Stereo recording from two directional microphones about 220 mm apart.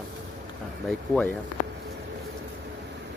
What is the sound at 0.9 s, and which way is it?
Speech, 5° left (ahead or behind).